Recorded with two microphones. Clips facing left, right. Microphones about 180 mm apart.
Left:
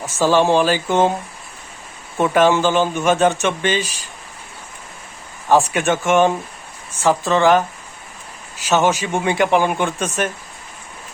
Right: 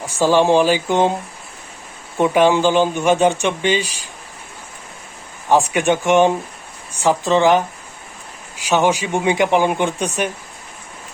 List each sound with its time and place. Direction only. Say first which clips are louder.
0.0 s speech: right 1 dB; 15° right (ahead or behind)
2.1 s speech: right 1 dB; 15° right (ahead or behind)
5.5 s speech: even; 15° right (ahead or behind)